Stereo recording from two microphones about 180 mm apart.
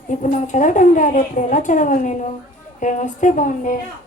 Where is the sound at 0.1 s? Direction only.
45° left (ahead or behind).